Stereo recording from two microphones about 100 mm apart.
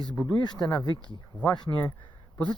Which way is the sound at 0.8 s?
45° right (ahead or behind).